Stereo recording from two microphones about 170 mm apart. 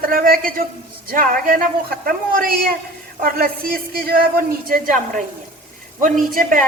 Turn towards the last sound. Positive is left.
turn(degrees=-55)  # may be behind; listen again after turning